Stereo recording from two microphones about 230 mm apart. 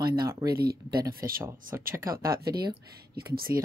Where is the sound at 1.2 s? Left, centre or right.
Centre.